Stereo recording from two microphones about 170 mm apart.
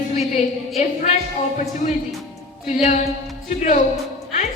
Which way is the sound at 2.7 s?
45° left (ahead or behind).